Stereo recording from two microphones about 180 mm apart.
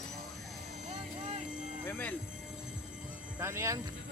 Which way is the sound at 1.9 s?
10° left (ahead or behind).